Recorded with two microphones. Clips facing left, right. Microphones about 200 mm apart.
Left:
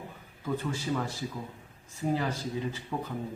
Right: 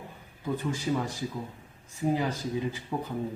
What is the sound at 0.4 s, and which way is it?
A man's voice, 15° right (ahead or behind).